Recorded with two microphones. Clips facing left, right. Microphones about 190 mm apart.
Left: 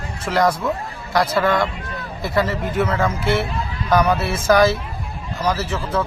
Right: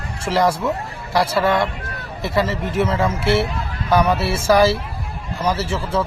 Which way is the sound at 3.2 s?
30° right (ahead or behind).